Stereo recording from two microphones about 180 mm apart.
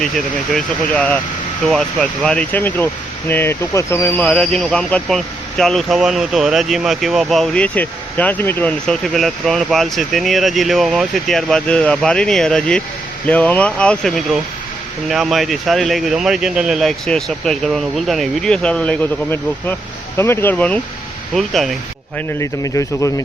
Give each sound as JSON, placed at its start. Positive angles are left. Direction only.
{"t": 0.5, "sound": "speech", "side_deg": 10}
{"t": 22.4, "sound": "speech", "side_deg": 20}